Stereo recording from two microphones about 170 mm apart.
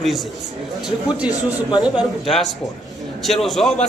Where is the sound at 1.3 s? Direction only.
25° left (ahead or behind).